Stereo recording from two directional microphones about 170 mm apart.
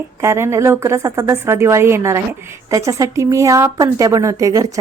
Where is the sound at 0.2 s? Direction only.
15° right (ahead or behind).